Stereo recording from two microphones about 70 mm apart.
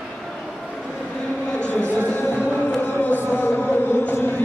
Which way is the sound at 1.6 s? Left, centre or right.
Right.